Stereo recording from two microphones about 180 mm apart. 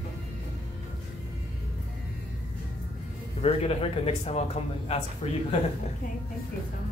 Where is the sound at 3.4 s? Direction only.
35° left (ahead or behind).